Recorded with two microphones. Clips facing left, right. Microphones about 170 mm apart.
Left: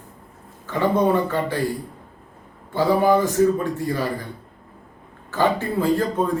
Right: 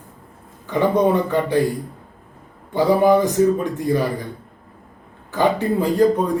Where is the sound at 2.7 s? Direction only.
20° right (ahead or behind).